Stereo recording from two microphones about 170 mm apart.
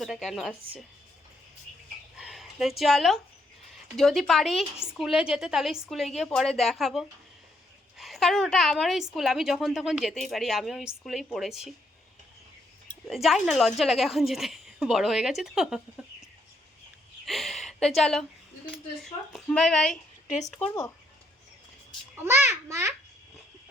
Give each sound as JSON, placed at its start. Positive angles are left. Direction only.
{"t": 0.0, "sound": "a woman's voice", "side_deg": 0}
{"t": 2.1, "sound": "a sound", "side_deg": 0}
{"t": 3.9, "sound": "a woman's voice", "side_deg": 0}
{"t": 13.1, "sound": "a woman's voice", "side_deg": 0}
{"t": 17.2, "sound": "a sound", "side_deg": 0}
{"t": 18.7, "sound": "a woman's voice", "side_deg": 0}
{"t": 20.6, "sound": "speech", "side_deg": 15}
{"t": 22.1, "sound": "a child's voice", "side_deg": -15}